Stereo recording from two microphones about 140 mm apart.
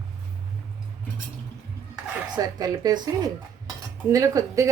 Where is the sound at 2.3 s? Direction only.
25° right (ahead or behind).